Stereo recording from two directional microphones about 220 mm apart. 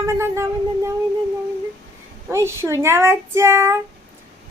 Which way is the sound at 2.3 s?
10° right (ahead or behind).